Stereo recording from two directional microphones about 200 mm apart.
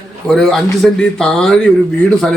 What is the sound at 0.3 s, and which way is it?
A man's voice, centre (ahead or behind).